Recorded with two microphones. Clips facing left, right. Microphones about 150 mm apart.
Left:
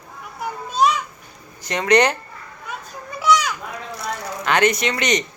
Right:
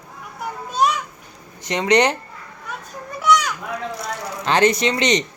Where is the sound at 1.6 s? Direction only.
20° right (ahead or behind).